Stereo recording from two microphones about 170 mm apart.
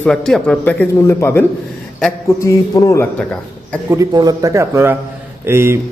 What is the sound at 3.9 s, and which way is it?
Speech, 20° right (ahead or behind).